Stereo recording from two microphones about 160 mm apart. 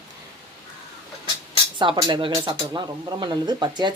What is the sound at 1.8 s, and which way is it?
Speech, 30° right (ahead or behind).